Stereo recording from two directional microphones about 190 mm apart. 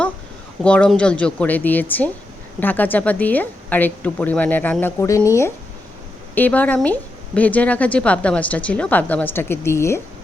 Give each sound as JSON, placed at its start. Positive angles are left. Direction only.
{"t": 0.6, "sound": "a woman's voice", "side_deg": 5}